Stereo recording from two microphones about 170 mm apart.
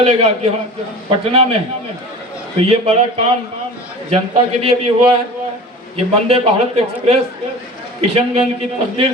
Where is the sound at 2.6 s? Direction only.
35° right (ahead or behind).